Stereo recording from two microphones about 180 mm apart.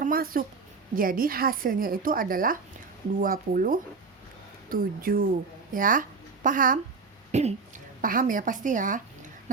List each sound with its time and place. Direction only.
0.0 s a woman's voice: 50° right (ahead or behind)
8.0 s a woman's voice: 50° right (ahead or behind)